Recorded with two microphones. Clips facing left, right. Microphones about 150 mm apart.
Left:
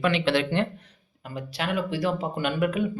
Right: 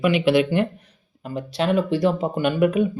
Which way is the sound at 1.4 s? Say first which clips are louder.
Right 7 dB; 25° right (ahead or behind).